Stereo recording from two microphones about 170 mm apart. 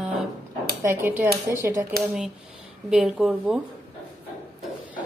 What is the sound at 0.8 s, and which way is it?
Speech, 10° right (ahead or behind).